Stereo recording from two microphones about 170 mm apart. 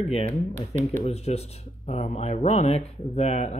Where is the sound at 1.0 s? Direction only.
40° left (ahead or behind).